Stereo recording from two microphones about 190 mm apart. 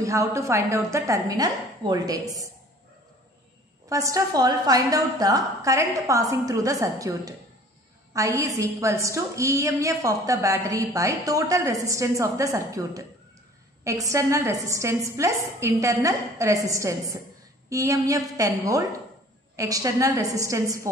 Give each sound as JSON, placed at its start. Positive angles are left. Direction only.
{"t": 0.0, "sound": "a woman's voice", "side_deg": -15}
{"t": 3.9, "sound": "a woman's voice", "side_deg": -15}